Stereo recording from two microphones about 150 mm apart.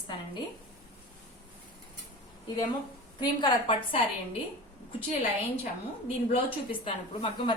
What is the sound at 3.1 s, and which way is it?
Speech, 30° left (ahead or behind).